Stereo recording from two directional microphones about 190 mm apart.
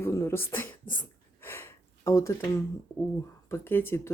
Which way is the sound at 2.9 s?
15° left (ahead or behind).